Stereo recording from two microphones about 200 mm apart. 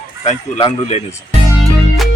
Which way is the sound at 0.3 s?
35° left (ahead or behind).